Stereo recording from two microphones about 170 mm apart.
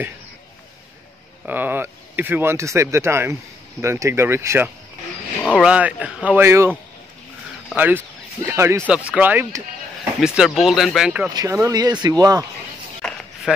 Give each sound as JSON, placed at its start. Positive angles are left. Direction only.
{"t": 1.4, "sound": "speech", "side_deg": -10}
{"t": 7.7, "sound": "speech", "side_deg": -10}
{"t": 11.3, "sound": "speech", "side_deg": -20}
{"t": 13.0, "sound": "a sound", "side_deg": 5}